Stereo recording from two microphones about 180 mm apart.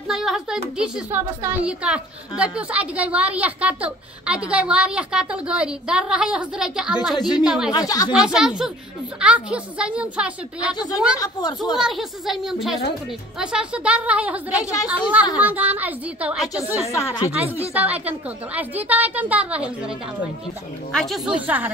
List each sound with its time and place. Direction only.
0.1 s a woman's voice: centre (ahead or behind)
7.2 s speech: 25° left (ahead or behind)
7.4 s a woman's voice: 5° right (ahead or behind)
7.7 s speech: 20° left (ahead or behind)
8.1 s a woman's voice: 5° right (ahead or behind)
11.1 s speech: 20° left (ahead or behind)
11.7 s a woman's voice: centre (ahead or behind)
14.6 s speech: 20° left (ahead or behind)
14.9 s speech: 10° right (ahead or behind)
16.8 s speech: 15° left (ahead or behind)
17.3 s speech: 10° right (ahead or behind)
20.9 s a woman's voice: centre (ahead or behind)